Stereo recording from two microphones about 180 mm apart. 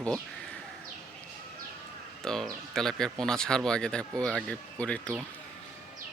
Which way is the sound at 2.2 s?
5° left (ahead or behind).